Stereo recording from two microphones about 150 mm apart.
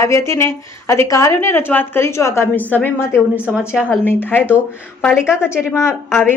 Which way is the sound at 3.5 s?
5° right (ahead or behind).